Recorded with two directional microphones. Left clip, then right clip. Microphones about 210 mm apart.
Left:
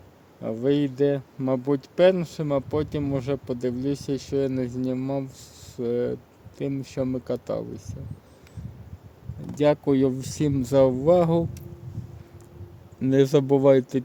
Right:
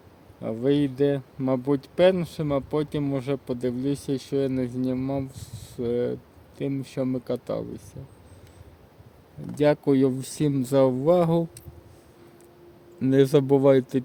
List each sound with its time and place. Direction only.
0.4 s speech: 5° left (ahead or behind)
9.6 s speech: centre (ahead or behind)
13.0 s speech: centre (ahead or behind)